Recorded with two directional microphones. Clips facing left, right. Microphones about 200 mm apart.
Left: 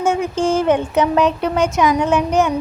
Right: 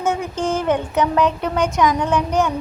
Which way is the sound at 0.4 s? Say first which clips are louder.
Left 3 dB; 20° left (ahead or behind).